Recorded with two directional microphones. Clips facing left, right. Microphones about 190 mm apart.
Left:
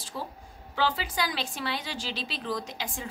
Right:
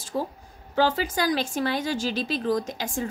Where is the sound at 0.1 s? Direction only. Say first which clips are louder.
Right 9 dB; 45° right (ahead or behind).